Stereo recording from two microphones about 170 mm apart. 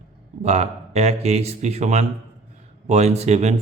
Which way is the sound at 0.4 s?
40° right (ahead or behind).